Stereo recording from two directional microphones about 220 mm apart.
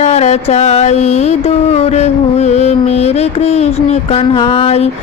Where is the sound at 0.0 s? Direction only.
30° left (ahead or behind).